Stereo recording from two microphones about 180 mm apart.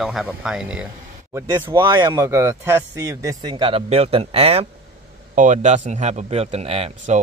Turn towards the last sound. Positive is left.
turn(degrees=-35)  # may be behind; listen again after turning